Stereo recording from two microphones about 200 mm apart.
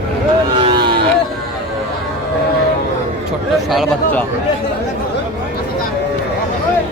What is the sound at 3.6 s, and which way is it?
Speech, 5° left (ahead or behind).